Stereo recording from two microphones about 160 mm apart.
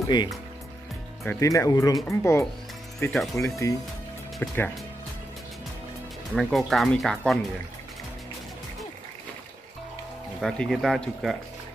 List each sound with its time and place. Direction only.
1.2 s speech: 15° left (ahead or behind)
6.3 s speech: centre (ahead or behind)
10.4 s speech: centre (ahead or behind)